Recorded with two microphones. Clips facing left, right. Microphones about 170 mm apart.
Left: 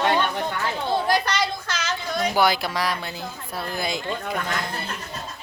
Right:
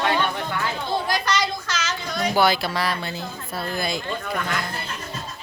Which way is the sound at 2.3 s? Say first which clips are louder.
Right 2 dB; 15° left (ahead or behind).